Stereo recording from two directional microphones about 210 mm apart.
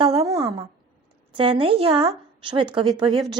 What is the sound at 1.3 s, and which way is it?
A woman's voice, 25° right (ahead or behind).